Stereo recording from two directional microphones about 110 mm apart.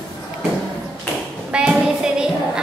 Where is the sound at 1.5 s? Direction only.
5° right (ahead or behind).